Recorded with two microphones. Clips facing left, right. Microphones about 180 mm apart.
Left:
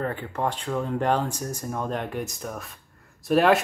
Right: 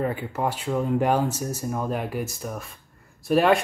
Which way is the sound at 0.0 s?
10° right (ahead or behind).